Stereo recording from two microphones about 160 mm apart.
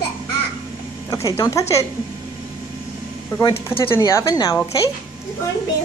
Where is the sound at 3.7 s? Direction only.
15° left (ahead or behind).